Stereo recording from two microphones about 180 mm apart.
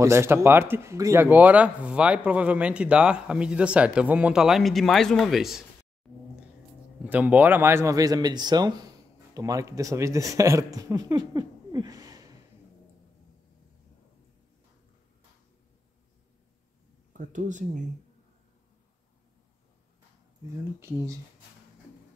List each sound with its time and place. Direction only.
0.0 s speech: 15° right (ahead or behind)
7.0 s speech: 10° right (ahead or behind)
17.1 s speech: 45° right (ahead or behind)
20.8 s speech: 15° right (ahead or behind)